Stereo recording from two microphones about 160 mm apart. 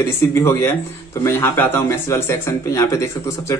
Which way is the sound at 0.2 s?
15° left (ahead or behind).